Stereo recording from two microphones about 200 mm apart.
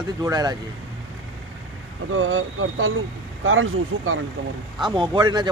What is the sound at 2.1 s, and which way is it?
Speech, 90° right.